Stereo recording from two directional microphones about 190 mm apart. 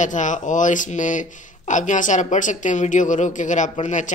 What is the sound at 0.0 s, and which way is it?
Speech, 40° left (ahead or behind).